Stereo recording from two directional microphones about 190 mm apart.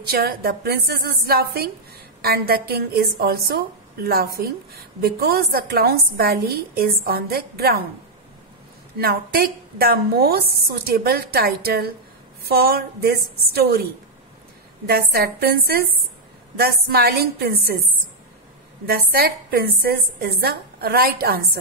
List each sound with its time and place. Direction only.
0.0 s a woman's voice: 55° right (ahead or behind)
8.9 s a woman's voice: 55° right (ahead or behind)
14.9 s a woman's voice: 55° right (ahead or behind)
18.9 s a woman's voice: 55° right (ahead or behind)